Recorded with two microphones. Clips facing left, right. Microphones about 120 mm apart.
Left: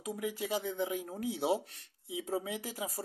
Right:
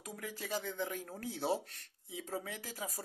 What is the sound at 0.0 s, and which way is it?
Speech, 15° left (ahead or behind).